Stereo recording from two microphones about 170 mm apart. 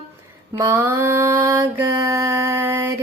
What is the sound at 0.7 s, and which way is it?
Mantra, 15° right (ahead or behind).